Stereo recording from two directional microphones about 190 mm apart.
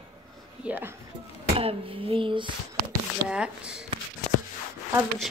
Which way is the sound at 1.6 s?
30° right (ahead or behind).